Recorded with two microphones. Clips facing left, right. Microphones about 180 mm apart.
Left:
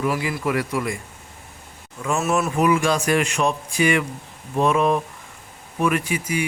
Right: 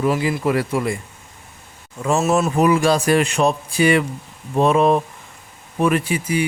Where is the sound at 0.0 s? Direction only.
30° right (ahead or behind).